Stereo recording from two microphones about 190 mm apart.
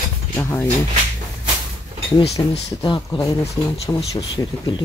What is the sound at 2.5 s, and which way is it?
Speech, 25° left (ahead or behind).